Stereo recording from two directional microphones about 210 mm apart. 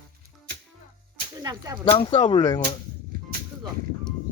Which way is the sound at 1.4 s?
15° right (ahead or behind).